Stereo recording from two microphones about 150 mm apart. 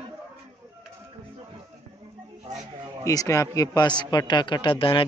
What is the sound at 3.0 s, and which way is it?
A man's voice, 20° left (ahead or behind).